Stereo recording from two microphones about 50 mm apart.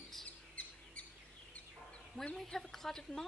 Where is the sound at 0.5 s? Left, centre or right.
Left.